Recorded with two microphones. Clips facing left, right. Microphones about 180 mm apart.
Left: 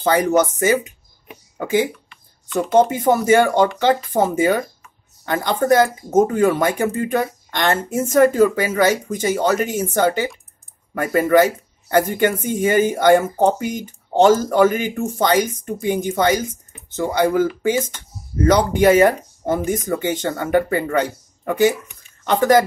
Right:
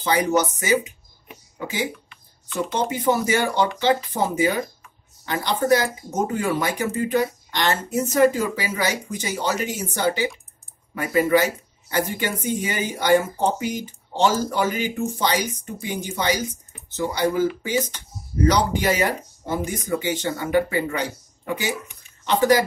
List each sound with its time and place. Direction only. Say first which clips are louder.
0.0 s speech: left 4 dB; 50° left (ahead or behind)
2.5 s speech: left 9 dB; 50° left (ahead or behind)